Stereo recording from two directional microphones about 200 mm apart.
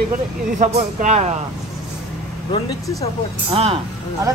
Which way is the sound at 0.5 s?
35° right (ahead or behind).